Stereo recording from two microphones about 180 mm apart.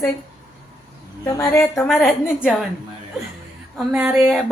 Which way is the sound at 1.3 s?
20° left (ahead or behind).